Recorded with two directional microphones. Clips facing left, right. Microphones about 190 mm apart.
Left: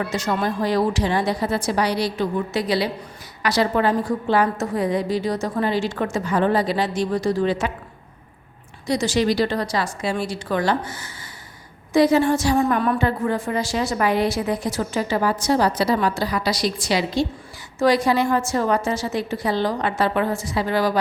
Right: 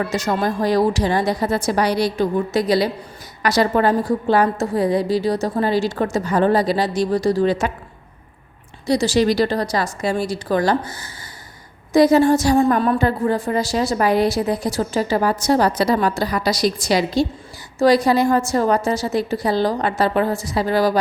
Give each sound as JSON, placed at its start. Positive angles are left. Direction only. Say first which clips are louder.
{"t": 0.0, "sound": "a woman's voice", "louder": "right 3 dB", "side_deg": -40}
{"t": 8.9, "sound": "a woman's voice", "louder": "right 3 dB", "side_deg": -35}